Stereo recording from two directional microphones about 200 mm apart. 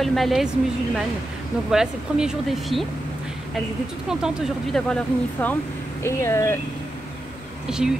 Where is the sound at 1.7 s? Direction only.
5° right (ahead or behind).